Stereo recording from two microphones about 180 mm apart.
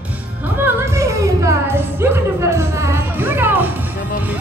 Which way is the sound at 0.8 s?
15° right (ahead or behind).